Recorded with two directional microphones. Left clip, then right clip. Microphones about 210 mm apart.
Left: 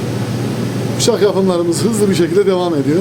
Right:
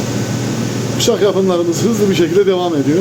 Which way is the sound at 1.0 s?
20° left (ahead or behind).